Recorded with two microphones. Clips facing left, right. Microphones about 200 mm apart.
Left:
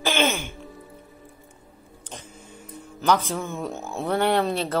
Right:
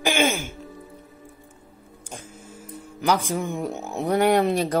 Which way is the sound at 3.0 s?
10° right (ahead or behind).